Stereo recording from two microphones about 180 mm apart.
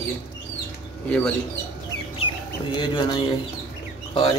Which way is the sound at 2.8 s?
25° left (ahead or behind).